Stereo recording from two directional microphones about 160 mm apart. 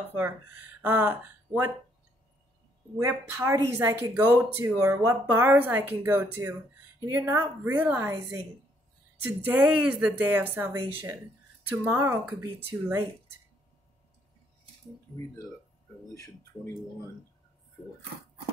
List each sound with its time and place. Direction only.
0.1 s speech: 10° right (ahead or behind)
3.0 s speech: 15° right (ahead or behind)
9.4 s speech: 10° right (ahead or behind)
16.1 s speech: 20° left (ahead or behind)